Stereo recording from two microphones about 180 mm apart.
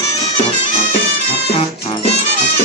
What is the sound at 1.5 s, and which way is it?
Music, 35° left (ahead or behind).